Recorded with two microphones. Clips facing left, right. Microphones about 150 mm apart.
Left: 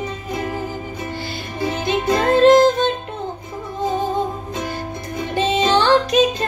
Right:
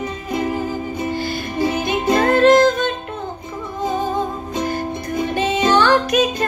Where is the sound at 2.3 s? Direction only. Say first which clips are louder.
Left 2 dB; 25° left (ahead or behind).